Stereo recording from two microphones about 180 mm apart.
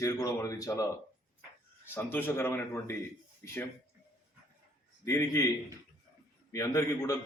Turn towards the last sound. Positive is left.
turn(degrees=20)  # may be behind; listen again after turning